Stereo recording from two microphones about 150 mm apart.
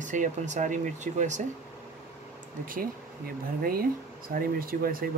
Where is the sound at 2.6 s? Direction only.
70° right (ahead or behind).